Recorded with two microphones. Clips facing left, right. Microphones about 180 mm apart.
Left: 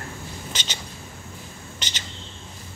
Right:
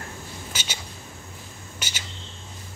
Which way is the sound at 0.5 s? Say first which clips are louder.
Left 1 dB; 10° right (ahead or behind).